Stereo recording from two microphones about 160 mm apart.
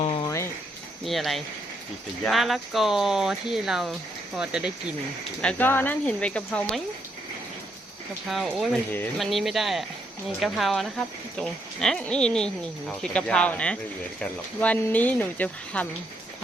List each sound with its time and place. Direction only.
0.2 s cricket: 20° left (ahead or behind)
1.0 s speech: centre (ahead or behind)
5.4 s speech: 10° left (ahead or behind)
8.3 s speech: centre (ahead or behind)